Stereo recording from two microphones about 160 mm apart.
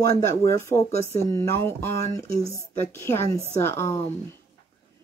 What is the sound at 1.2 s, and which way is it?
Speech, 30° right (ahead or behind).